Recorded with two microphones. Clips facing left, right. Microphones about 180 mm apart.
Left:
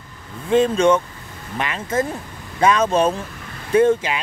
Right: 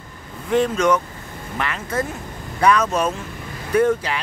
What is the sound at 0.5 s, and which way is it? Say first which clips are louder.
Speech: left 3 dB; 25° left (ahead or behind).